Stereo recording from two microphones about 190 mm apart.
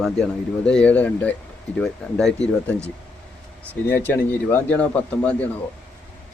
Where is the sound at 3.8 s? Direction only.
10° left (ahead or behind).